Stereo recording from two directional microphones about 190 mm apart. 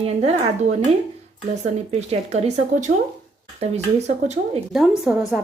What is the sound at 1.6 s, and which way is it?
Speech, 35° right (ahead or behind).